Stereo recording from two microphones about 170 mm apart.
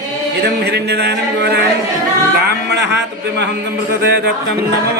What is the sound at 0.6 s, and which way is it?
Speech, 75° right (ahead or behind).